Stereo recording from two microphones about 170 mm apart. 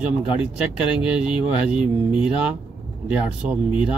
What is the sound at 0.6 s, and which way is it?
Speech, 5° right (ahead or behind).